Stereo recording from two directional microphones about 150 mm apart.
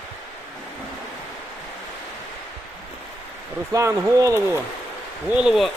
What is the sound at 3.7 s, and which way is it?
Speech, 20° right (ahead or behind).